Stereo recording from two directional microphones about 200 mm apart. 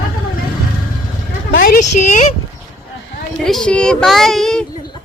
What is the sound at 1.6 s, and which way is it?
Speech, 45° left (ahead or behind).